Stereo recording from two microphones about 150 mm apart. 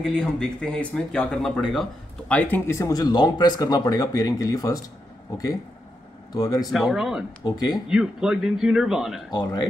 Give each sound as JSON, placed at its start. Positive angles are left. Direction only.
{"t": 0.0, "sound": "speech", "side_deg": 5}
{"t": 6.3, "sound": "speech", "side_deg": 25}
{"t": 6.7, "sound": "a man's voice", "side_deg": 0}
{"t": 7.4, "sound": "speech", "side_deg": 25}
{"t": 7.9, "sound": "a man's voice", "side_deg": -5}
{"t": 9.3, "sound": "speech", "side_deg": 30}